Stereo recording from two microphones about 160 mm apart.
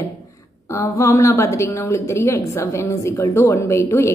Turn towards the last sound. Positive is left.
turn(degrees=15)  # may be behind; listen again after turning